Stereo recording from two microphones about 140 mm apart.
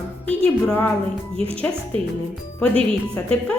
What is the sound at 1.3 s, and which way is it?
Speech, 45° right (ahead or behind).